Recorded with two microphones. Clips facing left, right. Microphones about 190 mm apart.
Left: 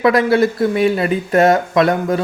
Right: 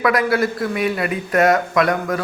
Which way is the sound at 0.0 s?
25° left (ahead or behind).